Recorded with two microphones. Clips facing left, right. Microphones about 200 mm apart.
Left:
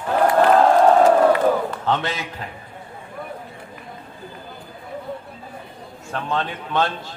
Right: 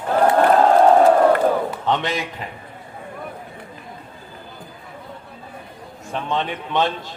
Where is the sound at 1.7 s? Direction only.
15° right (ahead or behind).